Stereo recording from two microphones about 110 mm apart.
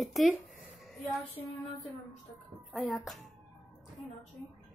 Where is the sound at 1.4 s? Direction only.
20° left (ahead or behind).